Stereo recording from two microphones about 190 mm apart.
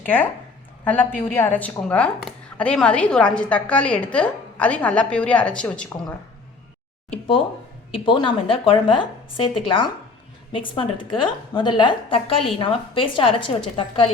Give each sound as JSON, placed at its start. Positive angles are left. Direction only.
{"t": 0.9, "sound": "speech", "side_deg": 10}
{"t": 7.9, "sound": "a woman's voice", "side_deg": 25}